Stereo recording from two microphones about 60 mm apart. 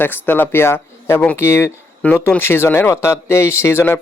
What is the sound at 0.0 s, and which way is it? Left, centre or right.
Speech, left.